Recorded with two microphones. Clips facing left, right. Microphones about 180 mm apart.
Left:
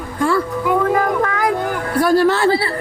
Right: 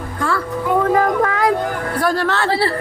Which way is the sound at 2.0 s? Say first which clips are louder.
Left 5 dB; 10° left (ahead or behind).